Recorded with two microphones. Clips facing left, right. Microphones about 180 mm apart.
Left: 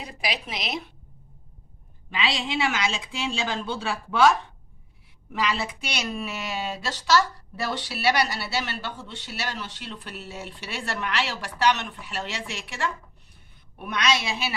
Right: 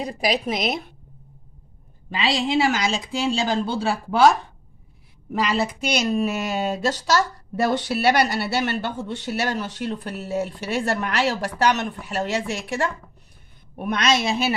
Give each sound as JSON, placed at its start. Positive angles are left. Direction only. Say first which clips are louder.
{"t": 0.0, "sound": "a woman's voice", "louder": "right 9 dB", "side_deg": -40}
{"t": 2.0, "sound": "a woman's voice", "louder": "right 5 dB", "side_deg": -40}